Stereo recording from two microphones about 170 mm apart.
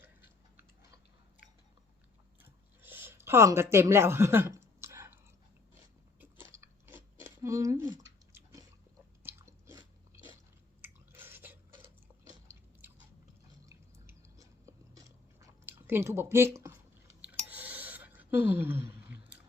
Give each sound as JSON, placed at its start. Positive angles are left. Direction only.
{"t": 0.0, "sound": "tick-tock", "side_deg": -10}
{"t": 2.8, "sound": "a sound", "side_deg": -10}
{"t": 6.1, "sound": "chewing", "side_deg": -15}
{"t": 9.2, "sound": "biting", "side_deg": -15}
{"t": 10.8, "sound": "chewing", "side_deg": -10}
{"t": 13.7, "sound": "chewing", "side_deg": -20}
{"t": 17.5, "sound": "a sound", "side_deg": -10}